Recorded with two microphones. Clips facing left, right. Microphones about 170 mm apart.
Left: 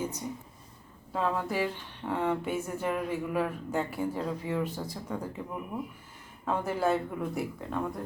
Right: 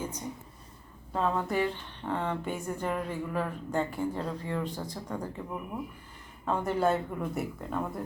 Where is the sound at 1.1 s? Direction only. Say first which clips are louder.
Right 1 dB; centre (ahead or behind).